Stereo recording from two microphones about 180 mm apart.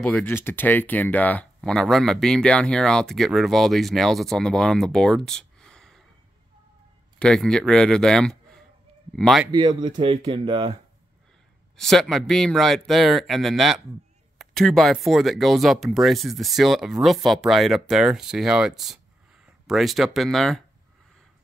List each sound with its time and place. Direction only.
0.0 s speech: 10° left (ahead or behind)
7.2 s a man's voice: 5° left (ahead or behind)
9.5 s speech: 25° right (ahead or behind)
11.7 s speech: 5° left (ahead or behind)